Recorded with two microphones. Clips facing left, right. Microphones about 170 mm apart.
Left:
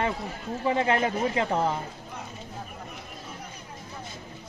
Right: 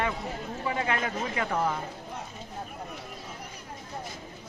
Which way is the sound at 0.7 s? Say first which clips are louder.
Left 6 dB; 30° left (ahead or behind).